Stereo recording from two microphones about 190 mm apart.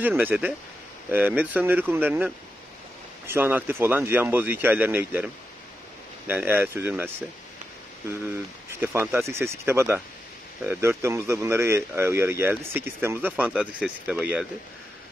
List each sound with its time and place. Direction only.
0.0 s a man's voice: 10° right (ahead or behind)
8.8 s a man's voice: 10° right (ahead or behind)